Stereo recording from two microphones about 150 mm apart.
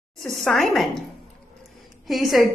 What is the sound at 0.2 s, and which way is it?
Speech, centre (ahead or behind).